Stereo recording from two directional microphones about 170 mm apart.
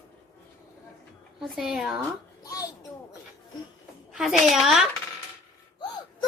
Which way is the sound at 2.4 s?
20° left (ahead or behind).